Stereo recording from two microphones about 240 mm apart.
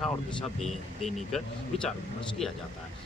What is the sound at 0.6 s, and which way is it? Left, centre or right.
A man's voice, centre.